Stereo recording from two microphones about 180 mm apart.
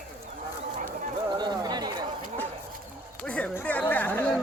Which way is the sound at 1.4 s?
25° right (ahead or behind).